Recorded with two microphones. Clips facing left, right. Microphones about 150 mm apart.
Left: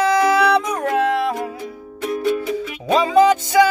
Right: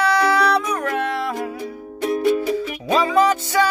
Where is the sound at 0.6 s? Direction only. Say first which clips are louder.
Left 1 dB; 25° left (ahead or behind).